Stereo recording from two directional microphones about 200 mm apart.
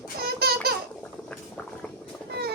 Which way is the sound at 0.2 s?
50° right (ahead or behind).